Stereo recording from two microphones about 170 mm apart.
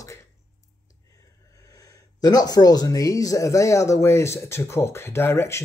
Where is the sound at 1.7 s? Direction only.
20° left (ahead or behind).